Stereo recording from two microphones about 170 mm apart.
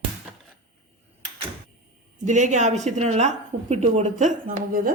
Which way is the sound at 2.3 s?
45° right (ahead or behind).